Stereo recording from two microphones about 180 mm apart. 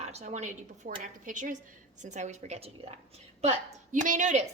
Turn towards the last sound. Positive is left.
turn(degrees=-45)  # may be behind; listen again after turning